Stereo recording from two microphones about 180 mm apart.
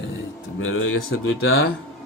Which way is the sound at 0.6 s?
90° left.